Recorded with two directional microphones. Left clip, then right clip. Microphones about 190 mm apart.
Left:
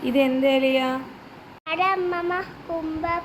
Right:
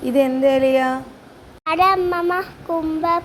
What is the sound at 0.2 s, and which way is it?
Speech, 15° right (ahead or behind).